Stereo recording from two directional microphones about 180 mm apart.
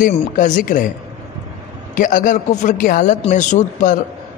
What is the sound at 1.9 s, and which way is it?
A man's voice, 50° left (ahead or behind).